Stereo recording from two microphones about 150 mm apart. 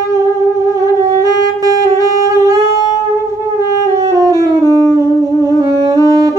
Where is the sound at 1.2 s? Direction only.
20° right (ahead or behind).